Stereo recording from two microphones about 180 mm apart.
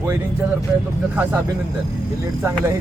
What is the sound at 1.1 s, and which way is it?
Speech, 10° right (ahead or behind).